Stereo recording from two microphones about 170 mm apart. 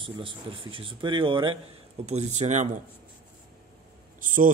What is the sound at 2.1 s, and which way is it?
Speech, 40° right (ahead or behind).